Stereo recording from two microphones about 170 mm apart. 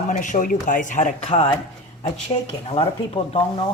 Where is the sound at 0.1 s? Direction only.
50° left (ahead or behind).